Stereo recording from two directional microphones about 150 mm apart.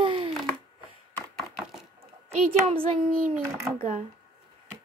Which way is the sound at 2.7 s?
40° right (ahead or behind).